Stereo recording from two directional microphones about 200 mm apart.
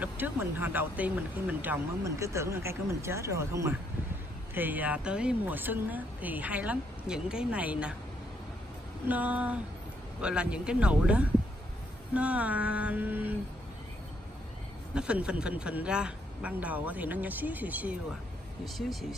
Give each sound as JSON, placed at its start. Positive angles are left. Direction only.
{"t": 0.0, "sound": "speech", "side_deg": -10}
{"t": 9.0, "sound": "speech", "side_deg": -5}
{"t": 15.0, "sound": "speech", "side_deg": -5}